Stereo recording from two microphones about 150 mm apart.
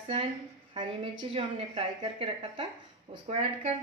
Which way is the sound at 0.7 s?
35° right (ahead or behind).